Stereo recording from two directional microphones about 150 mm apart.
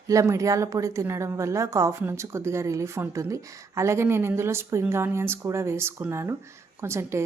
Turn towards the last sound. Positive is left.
turn(degrees=-20)  # may be behind; listen again after turning